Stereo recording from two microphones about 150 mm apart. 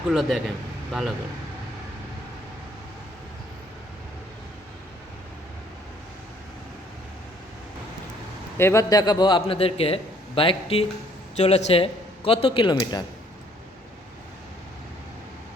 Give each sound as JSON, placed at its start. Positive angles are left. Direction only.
{"t": 0.1, "sound": "speech", "side_deg": 0}
{"t": 8.5, "sound": "a man's voice", "side_deg": 20}